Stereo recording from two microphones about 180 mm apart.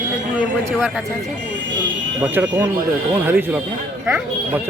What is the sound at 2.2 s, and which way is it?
Speech, 10° right (ahead or behind).